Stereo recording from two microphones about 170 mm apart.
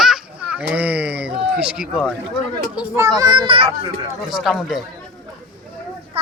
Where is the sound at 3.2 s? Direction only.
25° right (ahead or behind).